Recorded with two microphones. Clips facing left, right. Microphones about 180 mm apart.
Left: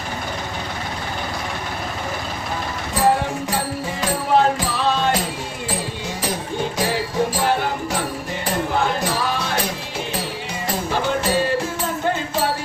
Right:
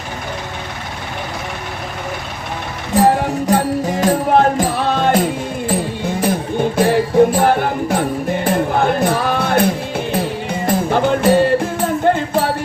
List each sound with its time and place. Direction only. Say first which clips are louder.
2.9 s music: right 5 dB; 45° right (ahead or behind)